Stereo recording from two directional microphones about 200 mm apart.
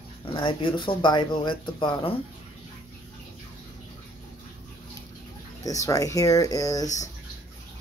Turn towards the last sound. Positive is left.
turn(degrees=15)  # may be behind; listen again after turning